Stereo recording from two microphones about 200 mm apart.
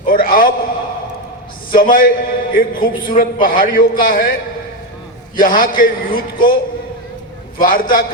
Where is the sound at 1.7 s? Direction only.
45° left (ahead or behind).